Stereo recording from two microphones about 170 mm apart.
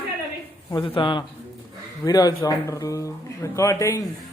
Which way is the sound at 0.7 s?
30° left (ahead or behind).